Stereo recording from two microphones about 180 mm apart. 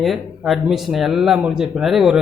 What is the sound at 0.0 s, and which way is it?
Speech, centre (ahead or behind).